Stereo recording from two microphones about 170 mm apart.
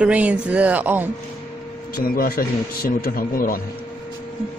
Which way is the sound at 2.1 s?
60° left (ahead or behind).